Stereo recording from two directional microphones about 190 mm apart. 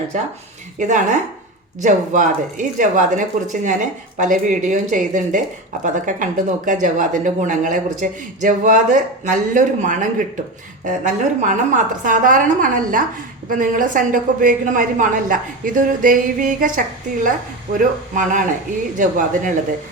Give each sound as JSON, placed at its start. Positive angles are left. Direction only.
{"t": 0.1, "sound": "speech", "side_deg": -40}